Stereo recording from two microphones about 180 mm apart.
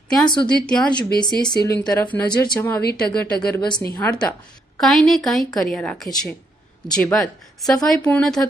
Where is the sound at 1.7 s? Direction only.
10° left (ahead or behind).